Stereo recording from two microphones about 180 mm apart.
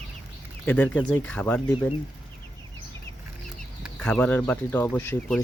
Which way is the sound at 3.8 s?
5° left (ahead or behind).